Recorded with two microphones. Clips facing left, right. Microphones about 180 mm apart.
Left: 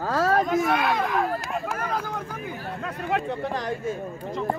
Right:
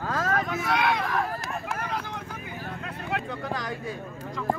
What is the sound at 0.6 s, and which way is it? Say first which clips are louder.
Speech: left 3 dB; 45° left (ahead or behind).